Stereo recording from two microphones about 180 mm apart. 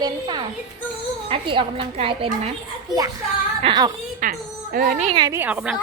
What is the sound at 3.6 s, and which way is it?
Speech, 25° right (ahead or behind).